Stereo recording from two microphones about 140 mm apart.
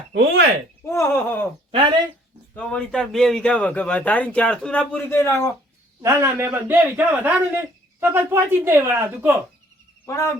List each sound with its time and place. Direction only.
0.9 s speech: 20° left (ahead or behind)
1.7 s speech: 35° right (ahead or behind)
2.6 s speech: 5° left (ahead or behind)
6.0 s a man's voice: 20° right (ahead or behind)